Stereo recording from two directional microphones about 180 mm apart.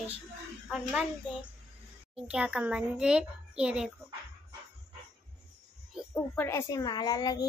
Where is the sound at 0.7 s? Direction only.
5° right (ahead or behind).